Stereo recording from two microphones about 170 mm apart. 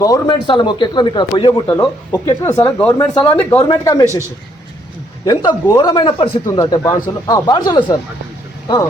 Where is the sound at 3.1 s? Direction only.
10° left (ahead or behind).